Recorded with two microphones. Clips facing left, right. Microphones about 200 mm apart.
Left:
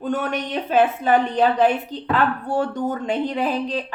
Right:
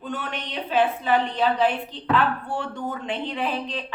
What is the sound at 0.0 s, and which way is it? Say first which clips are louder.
A woman's voice: left 8 dB; 45° left (ahead or behind).